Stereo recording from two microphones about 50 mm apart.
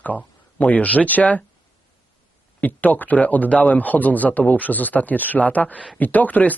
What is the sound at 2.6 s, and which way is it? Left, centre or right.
Speech, left.